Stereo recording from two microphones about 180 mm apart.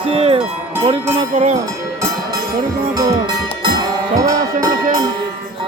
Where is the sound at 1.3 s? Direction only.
40° right (ahead or behind).